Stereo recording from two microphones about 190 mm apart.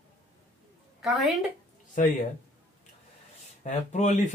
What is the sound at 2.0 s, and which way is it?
Speech, 40° left (ahead or behind).